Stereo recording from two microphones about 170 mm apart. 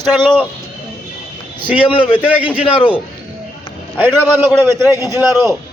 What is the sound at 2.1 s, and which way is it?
Speech, 10° right (ahead or behind).